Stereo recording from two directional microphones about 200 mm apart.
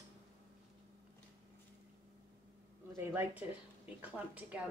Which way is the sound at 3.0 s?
10° right (ahead or behind).